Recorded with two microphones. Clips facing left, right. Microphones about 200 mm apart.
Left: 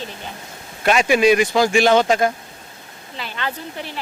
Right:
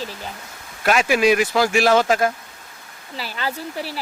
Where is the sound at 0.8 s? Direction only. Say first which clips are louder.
Left 2 dB; centre (ahead or behind).